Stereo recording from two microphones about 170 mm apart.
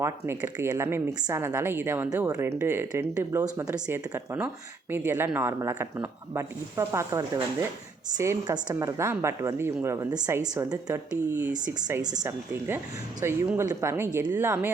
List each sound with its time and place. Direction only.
0.0 s speech: 15° right (ahead or behind)